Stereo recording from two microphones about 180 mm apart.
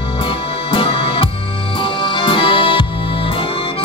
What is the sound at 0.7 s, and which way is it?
Music, 30° left (ahead or behind).